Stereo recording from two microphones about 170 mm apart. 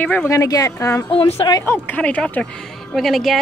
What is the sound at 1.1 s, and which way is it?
Speech, 35° left (ahead or behind).